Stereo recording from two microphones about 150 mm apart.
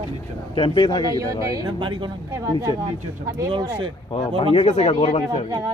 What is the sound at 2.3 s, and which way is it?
Speech, 20° right (ahead or behind).